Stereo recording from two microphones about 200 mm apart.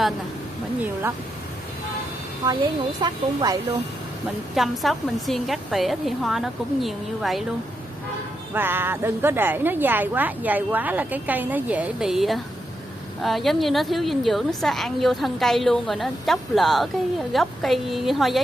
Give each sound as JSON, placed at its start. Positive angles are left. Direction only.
{"t": 3.0, "sound": "speech", "side_deg": -20}
{"t": 4.6, "sound": "a woman's voice", "side_deg": 0}
{"t": 8.5, "sound": "a woman's voice", "side_deg": -10}